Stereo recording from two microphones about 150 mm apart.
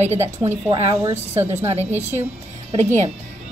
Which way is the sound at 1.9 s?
15° right (ahead or behind).